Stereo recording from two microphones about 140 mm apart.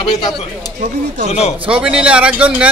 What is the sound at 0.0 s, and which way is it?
Speech, 40° left (ahead or behind).